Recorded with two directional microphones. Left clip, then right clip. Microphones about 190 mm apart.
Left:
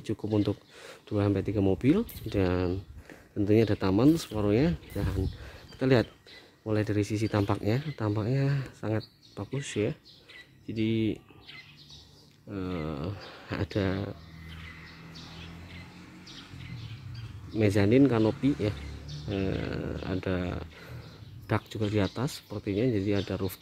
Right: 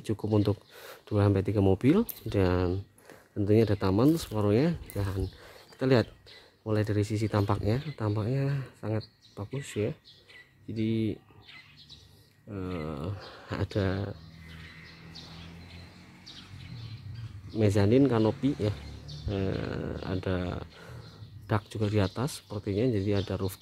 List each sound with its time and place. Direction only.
0.0 s speech: 20° right (ahead or behind)
12.4 s speech: 5° right (ahead or behind)
17.6 s speech: 10° right (ahead or behind)